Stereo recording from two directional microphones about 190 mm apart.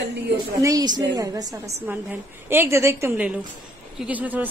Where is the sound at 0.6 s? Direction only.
20° right (ahead or behind).